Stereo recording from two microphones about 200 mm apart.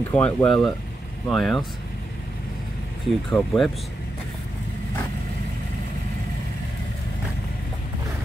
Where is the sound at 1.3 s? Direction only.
Centre (ahead or behind).